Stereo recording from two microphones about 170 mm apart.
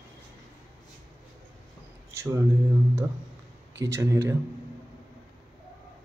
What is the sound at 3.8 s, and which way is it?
Speech, 15° right (ahead or behind).